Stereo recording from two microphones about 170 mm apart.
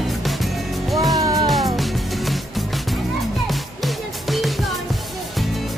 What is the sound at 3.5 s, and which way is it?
Music, centre (ahead or behind).